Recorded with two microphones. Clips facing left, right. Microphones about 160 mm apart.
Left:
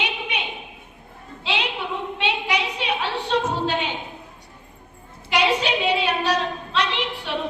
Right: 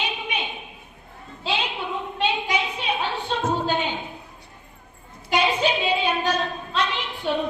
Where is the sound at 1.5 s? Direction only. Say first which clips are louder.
Left 1 dB; 75° left (ahead or behind).